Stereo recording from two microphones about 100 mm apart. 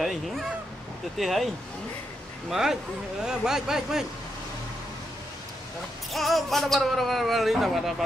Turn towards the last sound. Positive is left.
turn(degrees=0)  # may be behind; listen again after turning